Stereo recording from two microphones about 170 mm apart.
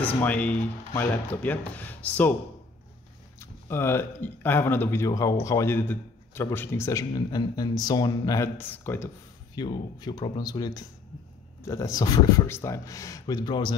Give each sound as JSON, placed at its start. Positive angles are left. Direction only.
{"t": 0.0, "sound": "speech", "side_deg": 10}
{"t": 3.3, "sound": "speech", "side_deg": 15}
{"t": 9.6, "sound": "a man's voice", "side_deg": 25}